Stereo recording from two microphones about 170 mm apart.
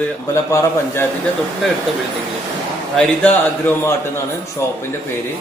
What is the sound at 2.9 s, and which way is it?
A man's voice, 5° left (ahead or behind).